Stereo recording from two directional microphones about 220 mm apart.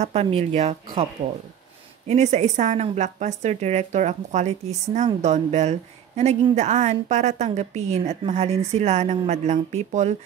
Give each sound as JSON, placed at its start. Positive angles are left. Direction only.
{"t": 0.0, "sound": "speech", "side_deg": -25}
{"t": 2.0, "sound": "a woman's voice", "side_deg": -30}